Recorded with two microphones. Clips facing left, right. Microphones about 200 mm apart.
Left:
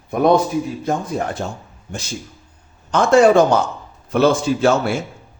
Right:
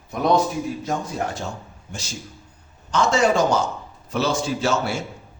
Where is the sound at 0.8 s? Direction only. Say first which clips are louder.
Left 4 dB; 55° left (ahead or behind).